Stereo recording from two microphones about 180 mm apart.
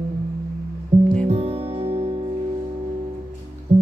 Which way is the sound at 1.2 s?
35° right (ahead or behind).